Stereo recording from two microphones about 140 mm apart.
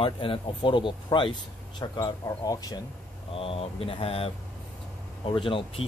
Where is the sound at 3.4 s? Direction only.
40° left (ahead or behind).